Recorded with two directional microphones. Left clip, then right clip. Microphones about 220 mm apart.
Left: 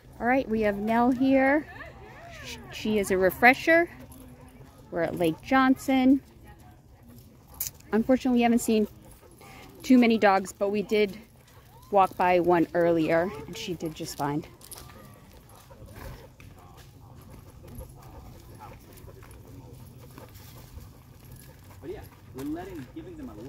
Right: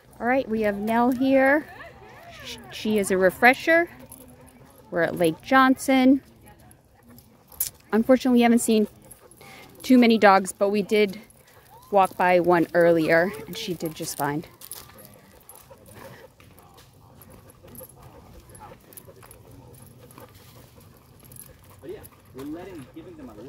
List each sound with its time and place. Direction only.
0.2 s speech: 5° right (ahead or behind); by 6.1 s 20° right (ahead or behind)
7.5 s speech: 15° right (ahead or behind)
22.3 s a sound: 15° left (ahead or behind)